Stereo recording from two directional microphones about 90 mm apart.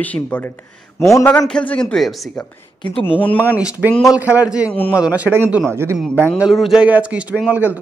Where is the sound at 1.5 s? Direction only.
10° left (ahead or behind).